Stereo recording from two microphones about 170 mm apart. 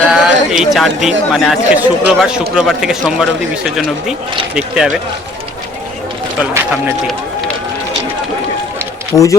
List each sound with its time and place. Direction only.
0.1 s a man's voice: 5° right (ahead or behind)
6.4 s speech: 10° right (ahead or behind)
9.1 s speech: 15° left (ahead or behind)